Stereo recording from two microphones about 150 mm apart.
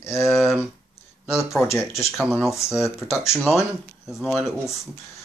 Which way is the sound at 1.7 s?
20° left (ahead or behind).